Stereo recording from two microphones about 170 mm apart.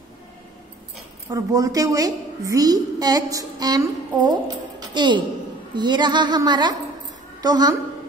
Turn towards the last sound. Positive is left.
turn(degrees=-20)  # may be behind; listen again after turning